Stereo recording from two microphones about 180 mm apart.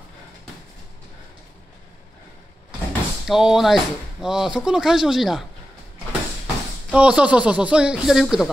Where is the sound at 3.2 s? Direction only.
Centre (ahead or behind).